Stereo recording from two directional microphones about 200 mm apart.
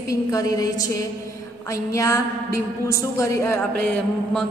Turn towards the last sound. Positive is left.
turn(degrees=10)  # may be behind; listen again after turning